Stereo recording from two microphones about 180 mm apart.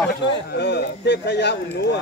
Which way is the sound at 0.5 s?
70° left (ahead or behind).